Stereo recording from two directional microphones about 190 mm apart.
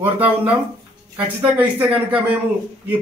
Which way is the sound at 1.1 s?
10° right (ahead or behind).